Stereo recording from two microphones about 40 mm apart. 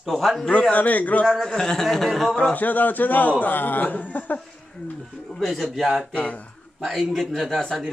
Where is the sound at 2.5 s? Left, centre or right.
Left.